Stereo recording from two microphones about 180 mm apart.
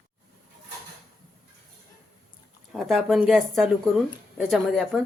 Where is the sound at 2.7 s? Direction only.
Centre (ahead or behind).